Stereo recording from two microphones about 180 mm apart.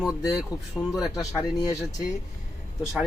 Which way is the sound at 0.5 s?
20° left (ahead or behind).